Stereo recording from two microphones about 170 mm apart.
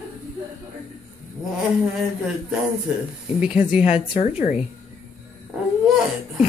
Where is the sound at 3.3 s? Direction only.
5° right (ahead or behind).